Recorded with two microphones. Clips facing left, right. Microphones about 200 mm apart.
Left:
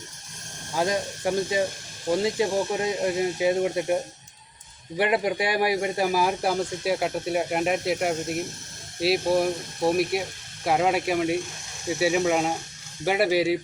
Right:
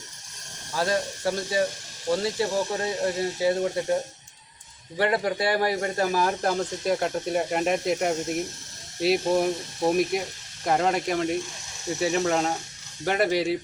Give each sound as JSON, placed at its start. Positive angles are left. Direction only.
{"t": 0.8, "sound": "speech", "side_deg": 15}
{"t": 4.9, "sound": "speech", "side_deg": 15}